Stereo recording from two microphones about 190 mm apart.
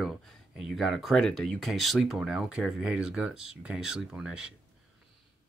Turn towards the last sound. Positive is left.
turn(degrees=-5)  # may be behind; listen again after turning